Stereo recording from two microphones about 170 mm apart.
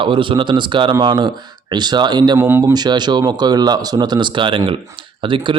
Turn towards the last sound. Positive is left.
turn(degrees=-30)  # may be behind; listen again after turning